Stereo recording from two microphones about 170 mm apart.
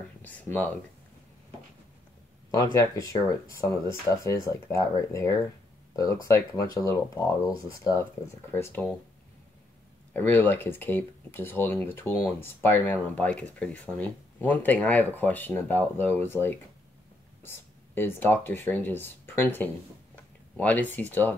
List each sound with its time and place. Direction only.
0.2 s speech: 10° left (ahead or behind)
2.5 s speech: 20° left (ahead or behind)
10.1 s speech: 10° left (ahead or behind)